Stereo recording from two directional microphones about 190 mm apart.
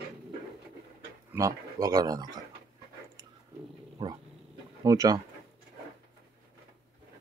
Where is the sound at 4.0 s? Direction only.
20° right (ahead or behind).